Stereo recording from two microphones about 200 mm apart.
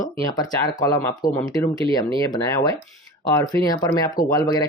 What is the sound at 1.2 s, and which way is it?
Speech, 45° left (ahead or behind).